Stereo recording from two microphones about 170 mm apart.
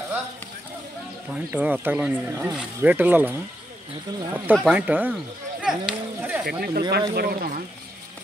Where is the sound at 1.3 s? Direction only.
10° right (ahead or behind).